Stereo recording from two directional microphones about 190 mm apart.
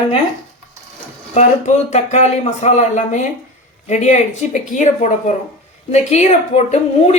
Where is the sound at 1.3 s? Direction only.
35° left (ahead or behind).